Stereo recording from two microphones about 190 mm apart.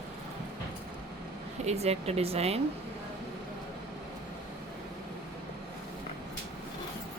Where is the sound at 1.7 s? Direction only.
35° right (ahead or behind).